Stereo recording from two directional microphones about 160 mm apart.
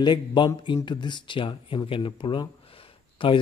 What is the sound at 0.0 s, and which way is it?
Speech, 30° left (ahead or behind).